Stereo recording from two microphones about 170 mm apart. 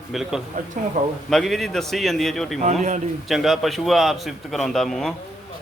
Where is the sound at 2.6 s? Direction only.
45° right (ahead or behind).